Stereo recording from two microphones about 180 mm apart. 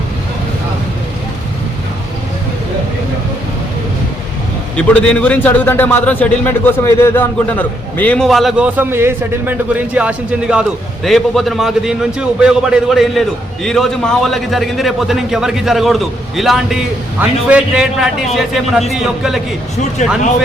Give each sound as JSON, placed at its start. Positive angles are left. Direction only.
{"t": 4.9, "sound": "a man's voice", "side_deg": 5}
{"t": 20.0, "sound": "speech", "side_deg": 40}